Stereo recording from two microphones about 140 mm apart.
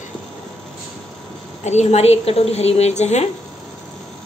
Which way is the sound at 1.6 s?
55° left (ahead or behind).